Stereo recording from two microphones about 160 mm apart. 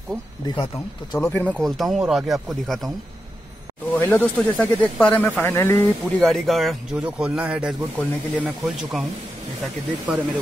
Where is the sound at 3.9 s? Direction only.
10° left (ahead or behind).